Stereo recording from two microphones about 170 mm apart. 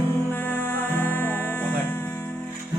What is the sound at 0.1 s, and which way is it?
Music, 10° left (ahead or behind).